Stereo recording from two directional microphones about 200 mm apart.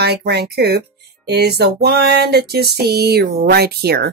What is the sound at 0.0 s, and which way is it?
Speech, 55° right (ahead or behind).